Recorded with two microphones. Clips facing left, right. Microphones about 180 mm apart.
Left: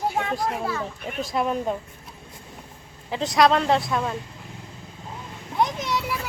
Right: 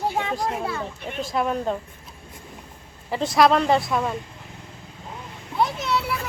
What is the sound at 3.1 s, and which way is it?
Speech, centre (ahead or behind).